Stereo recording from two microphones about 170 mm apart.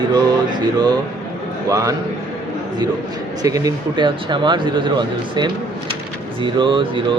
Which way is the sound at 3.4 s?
20° right (ahead or behind).